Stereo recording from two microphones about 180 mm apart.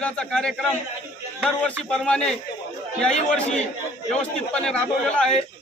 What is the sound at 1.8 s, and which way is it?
Speech, 5° left (ahead or behind).